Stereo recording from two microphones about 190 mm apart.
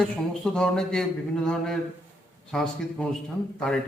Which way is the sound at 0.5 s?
5° left (ahead or behind).